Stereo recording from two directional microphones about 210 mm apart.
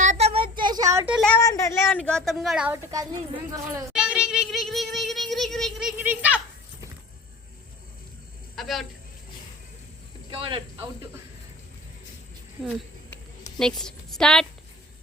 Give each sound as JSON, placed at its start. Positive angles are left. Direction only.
{"t": 0.0, "sound": "child singing", "side_deg": -30}
{"t": 1.2, "sound": "a woman's voice", "side_deg": 10}
{"t": 2.7, "sound": "speech", "side_deg": -15}
{"t": 3.9, "sound": "a sound", "side_deg": -5}
{"t": 8.5, "sound": "a woman's voice", "side_deg": 0}
{"t": 10.3, "sound": "speech", "side_deg": -25}
{"t": 13.6, "sound": "a woman's voice", "side_deg": 5}